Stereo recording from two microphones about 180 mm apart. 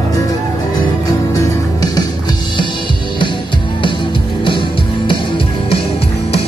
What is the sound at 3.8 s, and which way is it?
Music, 25° left (ahead or behind).